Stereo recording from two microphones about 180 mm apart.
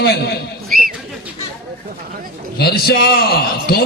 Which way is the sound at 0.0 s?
60° left (ahead or behind).